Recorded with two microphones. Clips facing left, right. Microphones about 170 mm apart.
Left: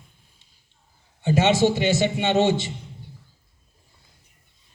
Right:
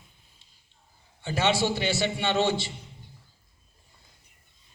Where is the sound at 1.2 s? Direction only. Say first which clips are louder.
Left 7 dB; 20° left (ahead or behind).